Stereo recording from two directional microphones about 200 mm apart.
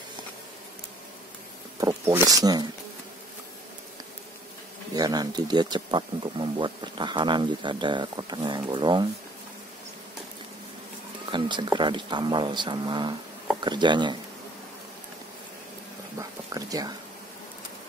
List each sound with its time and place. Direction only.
1.8 s speech: 15° right (ahead or behind)
4.9 s speech: 20° right (ahead or behind)
11.2 s speech: 25° right (ahead or behind)
16.2 s a sound: 15° right (ahead or behind)